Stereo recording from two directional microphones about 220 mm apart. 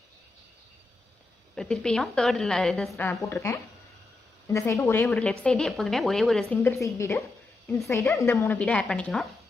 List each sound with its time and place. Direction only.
1.5 s a woman's voice: centre (ahead or behind)
5.0 s a woman's voice: centre (ahead or behind)
6.5 s a woman's voice: 10° left (ahead or behind)